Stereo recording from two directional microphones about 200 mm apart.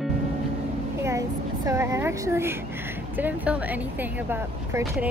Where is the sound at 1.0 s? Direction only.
15° right (ahead or behind).